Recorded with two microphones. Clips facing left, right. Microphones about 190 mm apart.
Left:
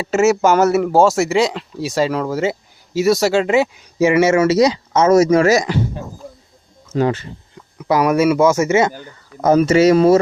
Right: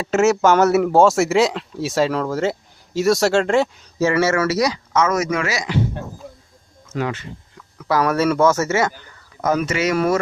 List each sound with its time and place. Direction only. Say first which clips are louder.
0.0 s speech: left 2 dB; 5° left (ahead or behind); by 5.8 s 40° left (ahead or behind)
6.9 s speech: left 7 dB; 35° left (ahead or behind)
7.8 s speech: left 4 dB; 15° left (ahead or behind)
9.4 s speech: left 8 dB; 30° left (ahead or behind)